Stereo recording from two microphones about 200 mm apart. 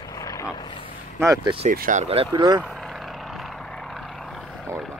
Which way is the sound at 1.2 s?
20° right (ahead or behind).